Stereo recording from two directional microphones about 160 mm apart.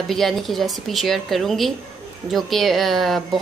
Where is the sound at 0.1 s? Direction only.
Centre (ahead or behind).